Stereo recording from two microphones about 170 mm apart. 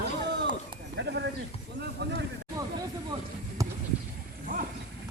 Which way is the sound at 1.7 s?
80° right.